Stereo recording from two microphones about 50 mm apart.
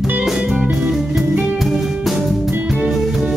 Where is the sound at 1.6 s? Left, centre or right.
Centre.